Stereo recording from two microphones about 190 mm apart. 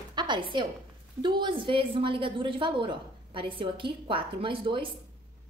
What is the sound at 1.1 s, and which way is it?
A woman's voice, 25° right (ahead or behind).